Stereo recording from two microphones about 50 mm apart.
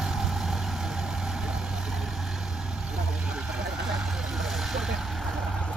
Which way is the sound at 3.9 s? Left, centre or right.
Centre.